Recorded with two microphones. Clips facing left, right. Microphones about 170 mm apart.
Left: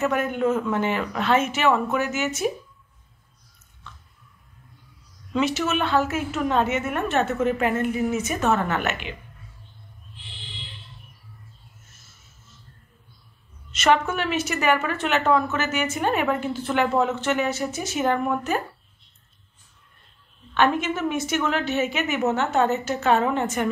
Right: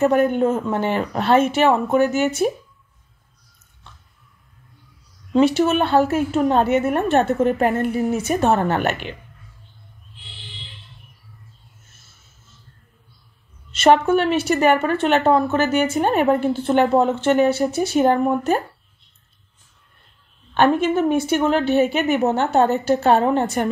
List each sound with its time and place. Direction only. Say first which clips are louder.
0.0 s a woman's voice: right 6 dB; 35° right (ahead or behind)
5.3 s a woman's voice: right 7 dB; 30° right (ahead or behind)
13.7 s a woman's voice: right 6 dB; 30° right (ahead or behind)
20.5 s a woman's voice: right 5 dB; 35° right (ahead or behind)